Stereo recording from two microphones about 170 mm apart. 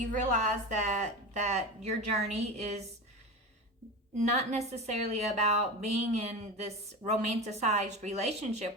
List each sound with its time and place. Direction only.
0.0 s a woman's voice: 45° right (ahead or behind)
4.3 s a woman's voice: 40° right (ahead or behind)